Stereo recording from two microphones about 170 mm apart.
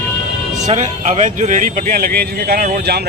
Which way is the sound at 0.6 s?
45° right (ahead or behind).